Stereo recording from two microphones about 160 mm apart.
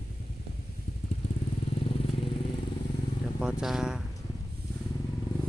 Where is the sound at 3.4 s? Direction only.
5° right (ahead or behind).